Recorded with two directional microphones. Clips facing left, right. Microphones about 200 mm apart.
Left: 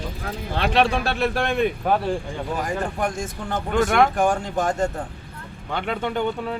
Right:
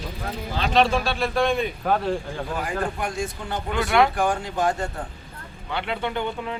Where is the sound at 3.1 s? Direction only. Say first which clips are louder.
Left 1 dB; 45° left (ahead or behind).